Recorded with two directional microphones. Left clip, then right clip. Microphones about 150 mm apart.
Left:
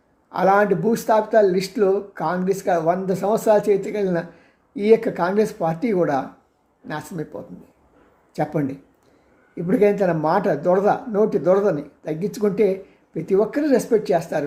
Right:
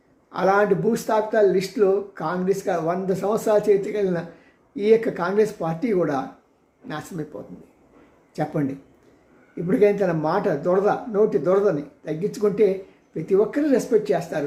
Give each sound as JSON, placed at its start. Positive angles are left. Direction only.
{"t": 0.3, "sound": "speech", "side_deg": 25}
{"t": 8.3, "sound": "speech", "side_deg": 20}